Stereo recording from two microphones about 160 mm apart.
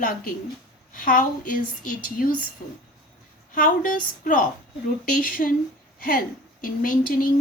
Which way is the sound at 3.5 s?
60° left (ahead or behind).